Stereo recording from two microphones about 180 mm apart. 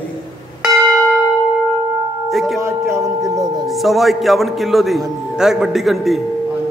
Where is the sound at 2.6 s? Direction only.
15° right (ahead or behind).